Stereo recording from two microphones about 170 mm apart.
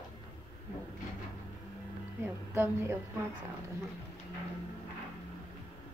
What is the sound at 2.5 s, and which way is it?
Speech, 15° right (ahead or behind).